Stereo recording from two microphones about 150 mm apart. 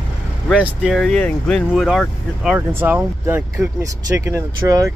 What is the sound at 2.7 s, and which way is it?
Speech, 15° right (ahead or behind).